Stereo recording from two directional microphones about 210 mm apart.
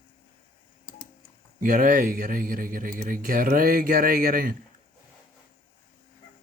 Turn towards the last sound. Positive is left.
turn(degrees=-40)  # may be behind; listen again after turning